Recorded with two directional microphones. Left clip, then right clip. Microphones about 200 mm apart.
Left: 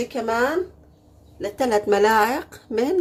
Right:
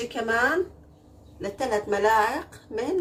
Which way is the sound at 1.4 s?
55° left (ahead or behind).